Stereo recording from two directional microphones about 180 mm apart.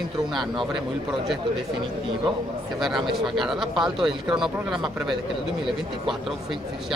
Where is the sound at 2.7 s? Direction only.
Centre (ahead or behind).